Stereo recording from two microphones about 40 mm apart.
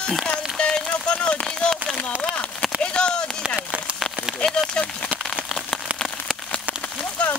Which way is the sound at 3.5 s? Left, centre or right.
Right.